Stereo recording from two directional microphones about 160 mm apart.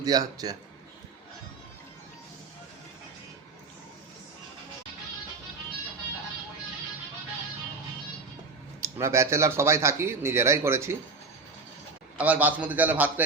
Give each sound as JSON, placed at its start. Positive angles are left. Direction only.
{"t": 0.0, "sound": "a man's voice", "side_deg": -25}
{"t": 8.8, "sound": "speech", "side_deg": -15}
{"t": 12.1, "sound": "speech", "side_deg": -10}